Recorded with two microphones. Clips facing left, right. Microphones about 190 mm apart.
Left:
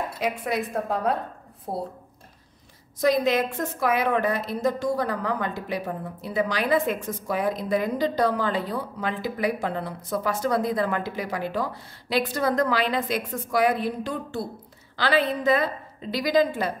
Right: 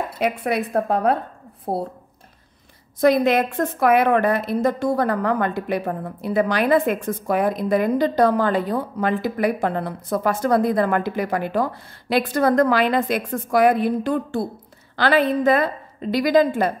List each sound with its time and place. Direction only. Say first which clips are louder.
0.2 s a woman's voice: right 5 dB; 60° right (ahead or behind)
3.0 s a woman's voice: right 5 dB; 60° right (ahead or behind)